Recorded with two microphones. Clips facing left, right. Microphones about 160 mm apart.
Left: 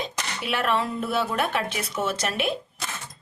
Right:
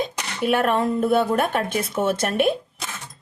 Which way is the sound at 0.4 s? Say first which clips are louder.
Right 6 dB; 50° right (ahead or behind).